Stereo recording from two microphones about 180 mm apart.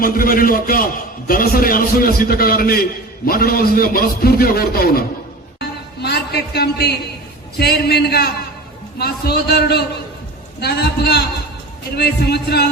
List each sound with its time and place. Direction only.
0.0 s a man's voice: 55° left (ahead or behind)
5.5 s music: 65° left (ahead or behind)
7.6 s a man's voice: 65° left (ahead or behind)